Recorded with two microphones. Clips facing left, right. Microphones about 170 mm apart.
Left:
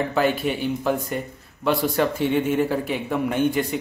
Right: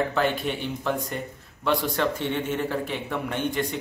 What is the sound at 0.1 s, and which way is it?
Speech, 5° left (ahead or behind).